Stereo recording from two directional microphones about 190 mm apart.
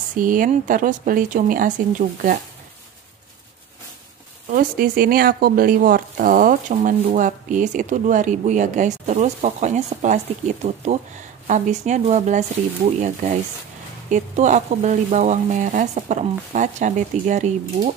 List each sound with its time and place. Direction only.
0.2 s speech: 45° right (ahead or behind)
4.5 s speech: 45° right (ahead or behind)